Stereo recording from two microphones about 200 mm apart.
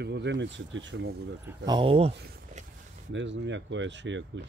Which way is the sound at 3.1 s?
65° right (ahead or behind).